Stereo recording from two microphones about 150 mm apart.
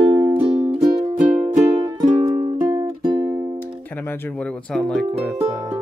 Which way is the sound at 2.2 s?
40° right (ahead or behind).